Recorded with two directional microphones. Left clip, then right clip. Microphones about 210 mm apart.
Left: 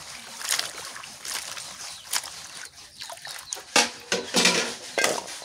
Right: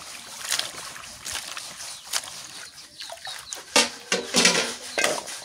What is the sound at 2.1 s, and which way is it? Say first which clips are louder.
Boat: even; centre (ahead or behind).